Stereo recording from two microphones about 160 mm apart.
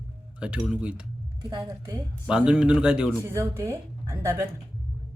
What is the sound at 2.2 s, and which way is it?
Speech, 5° right (ahead or behind).